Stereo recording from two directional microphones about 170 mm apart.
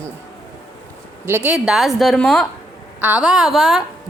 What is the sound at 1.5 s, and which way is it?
A woman's voice, centre (ahead or behind).